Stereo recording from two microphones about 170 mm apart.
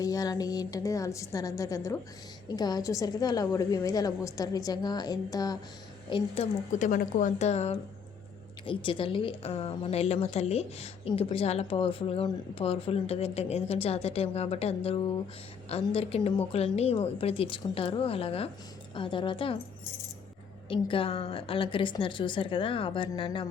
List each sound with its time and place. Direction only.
0.0 s a woman's voice: 20° left (ahead or behind)
20.7 s a woman's voice: 30° left (ahead or behind)